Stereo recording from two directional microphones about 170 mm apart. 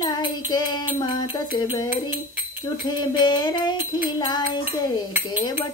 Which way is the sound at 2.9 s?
25° left (ahead or behind).